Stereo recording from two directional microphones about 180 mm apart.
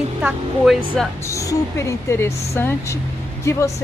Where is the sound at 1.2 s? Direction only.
15° left (ahead or behind).